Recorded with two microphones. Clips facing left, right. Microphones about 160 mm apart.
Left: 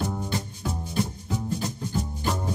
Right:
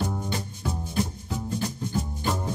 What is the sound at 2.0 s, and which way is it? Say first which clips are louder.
Music: even; centre (ahead or behind).